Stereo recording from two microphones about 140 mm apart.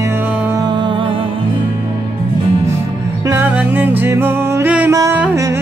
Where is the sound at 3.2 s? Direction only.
20° right (ahead or behind).